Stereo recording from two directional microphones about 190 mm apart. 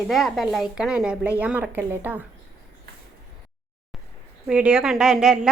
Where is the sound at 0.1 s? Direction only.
Centre (ahead or behind).